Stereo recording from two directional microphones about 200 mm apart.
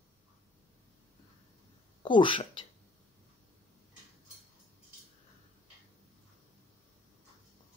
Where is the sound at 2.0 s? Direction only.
25° left (ahead or behind).